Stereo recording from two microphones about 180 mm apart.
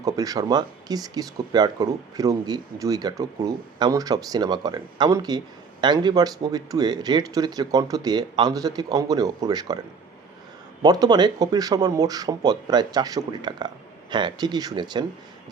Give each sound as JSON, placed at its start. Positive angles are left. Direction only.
{"t": 0.0, "sound": "speech", "side_deg": -20}
{"t": 10.8, "sound": "speech", "side_deg": -20}